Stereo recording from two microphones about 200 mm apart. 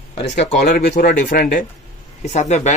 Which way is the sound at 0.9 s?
45° left (ahead or behind).